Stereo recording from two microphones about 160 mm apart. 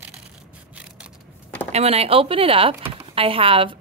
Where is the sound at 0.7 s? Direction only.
5° right (ahead or behind).